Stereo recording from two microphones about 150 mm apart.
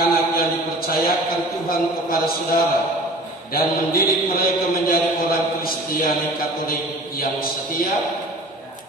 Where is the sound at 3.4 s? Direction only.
80° left.